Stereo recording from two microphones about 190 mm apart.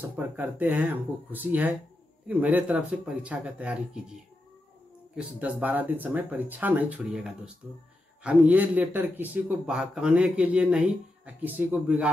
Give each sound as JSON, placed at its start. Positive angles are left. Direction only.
{"t": 0.1, "sound": "a man's voice", "side_deg": -10}
{"t": 5.1, "sound": "a man's voice", "side_deg": -10}